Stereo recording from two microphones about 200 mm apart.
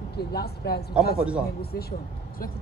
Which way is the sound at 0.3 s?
55° left (ahead or behind).